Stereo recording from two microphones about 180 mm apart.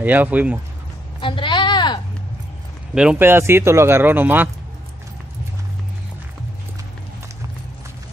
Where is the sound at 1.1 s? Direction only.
30° left (ahead or behind).